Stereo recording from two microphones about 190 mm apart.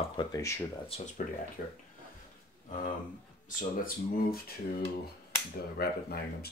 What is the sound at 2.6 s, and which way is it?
Speech, 40° left (ahead or behind).